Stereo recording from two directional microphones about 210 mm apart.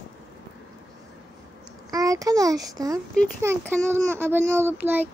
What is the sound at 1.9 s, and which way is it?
A child's voice, 15° right (ahead or behind).